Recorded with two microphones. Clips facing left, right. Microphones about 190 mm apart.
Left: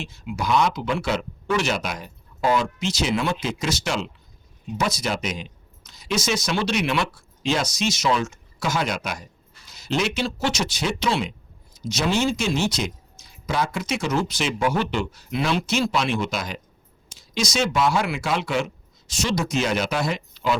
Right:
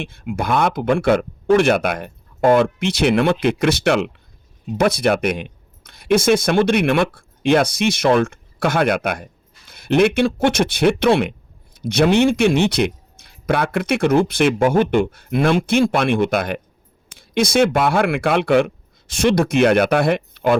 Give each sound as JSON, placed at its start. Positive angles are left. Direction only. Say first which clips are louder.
{"t": 0.0, "sound": "speech", "louder": "right 5 dB", "side_deg": -55}